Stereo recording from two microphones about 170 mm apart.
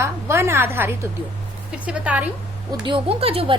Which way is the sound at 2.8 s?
30° right (ahead or behind).